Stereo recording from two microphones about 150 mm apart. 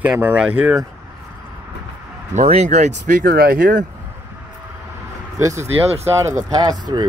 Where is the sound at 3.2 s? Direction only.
90° right.